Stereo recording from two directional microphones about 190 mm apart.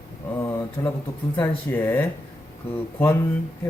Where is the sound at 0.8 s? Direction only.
15° left (ahead or behind).